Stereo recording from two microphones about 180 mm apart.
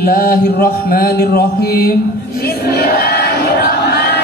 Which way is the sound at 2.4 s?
60° left (ahead or behind).